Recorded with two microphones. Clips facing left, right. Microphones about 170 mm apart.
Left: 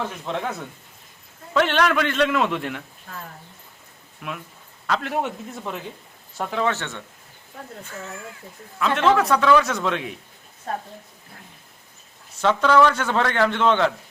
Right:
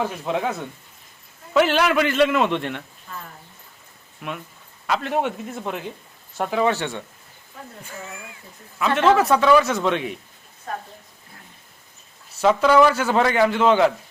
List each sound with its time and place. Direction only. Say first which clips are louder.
0.0 s a man's voice: right 4 dB; 5° right (ahead or behind)
4.2 s a man's voice: right 2 dB; centre (ahead or behind)
9.0 s a man's voice: right 2 dB; 5° right (ahead or behind)
12.4 s a man's voice: right 2 dB; 10° right (ahead or behind)